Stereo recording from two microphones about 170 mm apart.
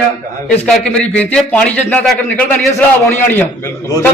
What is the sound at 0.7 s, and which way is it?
A man's voice, 5° left (ahead or behind).